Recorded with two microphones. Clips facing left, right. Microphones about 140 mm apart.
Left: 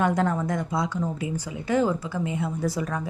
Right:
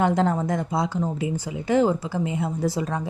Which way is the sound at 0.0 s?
25° right (ahead or behind).